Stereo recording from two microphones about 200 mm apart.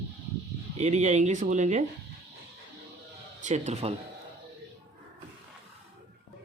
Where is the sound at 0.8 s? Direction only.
35° right (ahead or behind).